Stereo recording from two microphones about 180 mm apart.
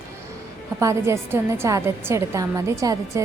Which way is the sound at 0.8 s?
15° right (ahead or behind).